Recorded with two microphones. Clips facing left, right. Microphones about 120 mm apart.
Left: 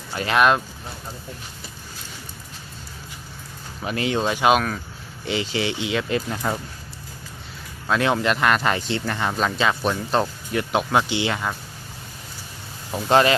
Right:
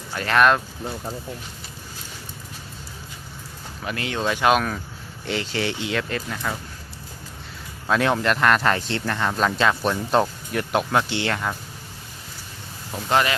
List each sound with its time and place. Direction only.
0.3 s speech: 10° left (ahead or behind)
3.8 s speech: 20° left (ahead or behind)
6.3 s speech: 30° left (ahead or behind)
7.9 s speech: centre (ahead or behind)
12.9 s speech: 25° left (ahead or behind)